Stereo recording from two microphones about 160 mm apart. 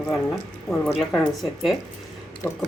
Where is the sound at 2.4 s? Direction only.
15° left (ahead or behind).